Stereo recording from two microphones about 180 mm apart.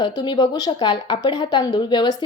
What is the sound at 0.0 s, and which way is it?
Speech, 25° left (ahead or behind).